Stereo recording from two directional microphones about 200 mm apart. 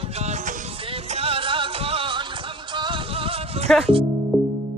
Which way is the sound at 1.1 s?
30° right (ahead or behind).